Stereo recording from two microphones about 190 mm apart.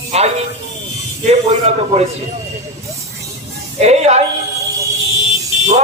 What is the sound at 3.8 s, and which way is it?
Speech, 35° right (ahead or behind).